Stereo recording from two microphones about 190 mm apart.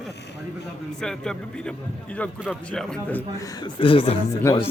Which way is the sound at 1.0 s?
5° left (ahead or behind).